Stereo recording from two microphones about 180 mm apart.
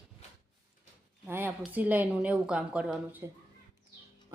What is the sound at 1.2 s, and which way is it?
A woman's voice, 10° right (ahead or behind).